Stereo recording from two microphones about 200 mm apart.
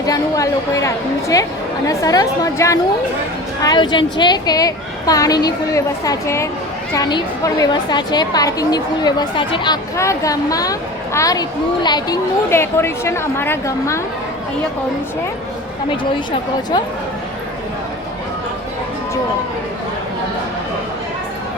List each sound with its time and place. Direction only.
0.0 s a woman's voice: 15° left (ahead or behind)